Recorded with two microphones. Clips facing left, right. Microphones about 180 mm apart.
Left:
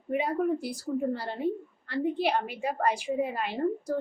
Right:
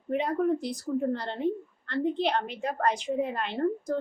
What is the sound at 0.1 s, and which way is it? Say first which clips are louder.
A woman's voice: right 1 dB; 5° left (ahead or behind).